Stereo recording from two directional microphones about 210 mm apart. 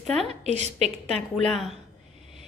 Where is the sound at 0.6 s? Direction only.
30° right (ahead or behind).